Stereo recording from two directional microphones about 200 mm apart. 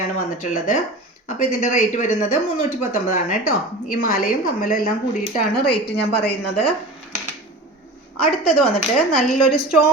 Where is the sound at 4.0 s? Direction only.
45° left (ahead or behind).